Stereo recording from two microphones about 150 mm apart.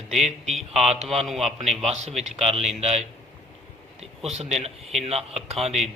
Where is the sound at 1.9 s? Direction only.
50° right (ahead or behind).